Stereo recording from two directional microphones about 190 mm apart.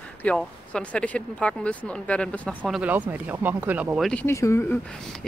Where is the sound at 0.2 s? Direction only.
5° left (ahead or behind).